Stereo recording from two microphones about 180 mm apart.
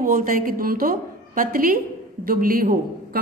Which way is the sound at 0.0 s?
50° right (ahead or behind).